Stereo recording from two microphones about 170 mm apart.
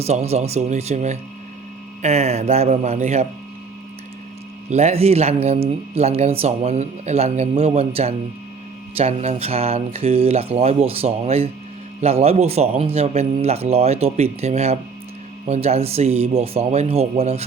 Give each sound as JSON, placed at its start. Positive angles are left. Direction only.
{"t": 0.0, "sound": "speech", "side_deg": -40}
{"t": 4.7, "sound": "speech", "side_deg": -40}